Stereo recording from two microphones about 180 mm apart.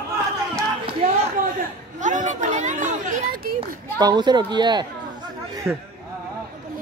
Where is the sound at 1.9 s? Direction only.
45° right (ahead or behind).